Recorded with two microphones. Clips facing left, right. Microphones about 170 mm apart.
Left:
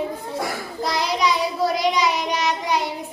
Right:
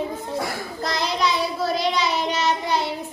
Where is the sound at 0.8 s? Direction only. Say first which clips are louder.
Left 2 dB; 10° left (ahead or behind).